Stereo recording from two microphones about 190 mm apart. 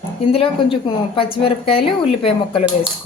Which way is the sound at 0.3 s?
30° left (ahead or behind).